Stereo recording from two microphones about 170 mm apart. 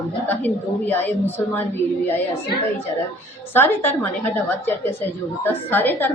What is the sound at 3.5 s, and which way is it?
A woman's voice, 15° left (ahead or behind).